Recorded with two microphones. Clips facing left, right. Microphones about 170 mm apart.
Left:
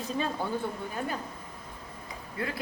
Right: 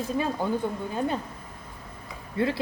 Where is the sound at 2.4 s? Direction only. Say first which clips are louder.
Right 9 dB; 25° right (ahead or behind).